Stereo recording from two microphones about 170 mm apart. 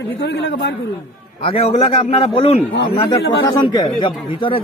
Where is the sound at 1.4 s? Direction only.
35° left (ahead or behind).